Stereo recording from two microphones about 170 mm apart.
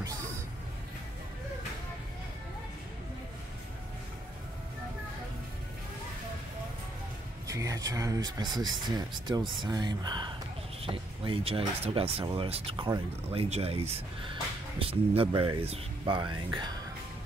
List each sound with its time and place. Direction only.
7.4 s speech: 20° right (ahead or behind)